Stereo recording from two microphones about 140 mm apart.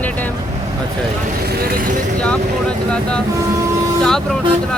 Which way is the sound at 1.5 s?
90° right.